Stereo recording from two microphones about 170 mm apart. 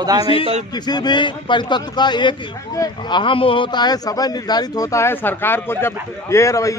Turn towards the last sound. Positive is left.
turn(degrees=20)  # may be behind; listen again after turning